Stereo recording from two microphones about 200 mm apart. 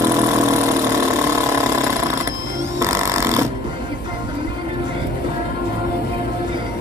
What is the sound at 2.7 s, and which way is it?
Music, 15° right (ahead or behind).